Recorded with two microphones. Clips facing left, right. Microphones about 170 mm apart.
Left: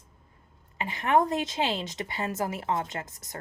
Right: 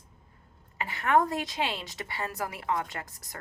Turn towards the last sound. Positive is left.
turn(degrees=20)  # may be behind; listen again after turning